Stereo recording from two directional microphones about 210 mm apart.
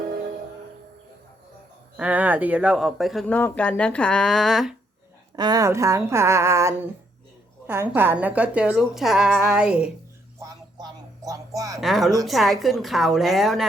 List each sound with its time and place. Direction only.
2.0 s speech: 5° right (ahead or behind)
5.4 s speech: 15° right (ahead or behind)
10.4 s a sound: 15° right (ahead or behind)
11.8 s speech: centre (ahead or behind)